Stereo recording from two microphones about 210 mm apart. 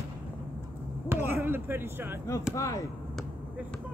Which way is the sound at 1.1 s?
10° right (ahead or behind).